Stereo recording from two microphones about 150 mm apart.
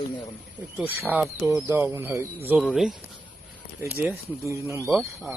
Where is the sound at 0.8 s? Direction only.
10° right (ahead or behind).